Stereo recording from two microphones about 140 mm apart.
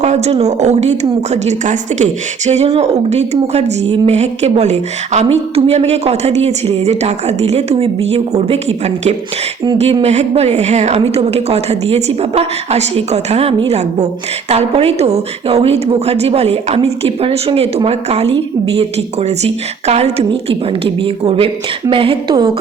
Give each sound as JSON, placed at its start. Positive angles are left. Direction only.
{"t": 0.0, "sound": "speech", "side_deg": -50}
{"t": 9.7, "sound": "speech", "side_deg": -45}
{"t": 19.4, "sound": "a woman's voice", "side_deg": -50}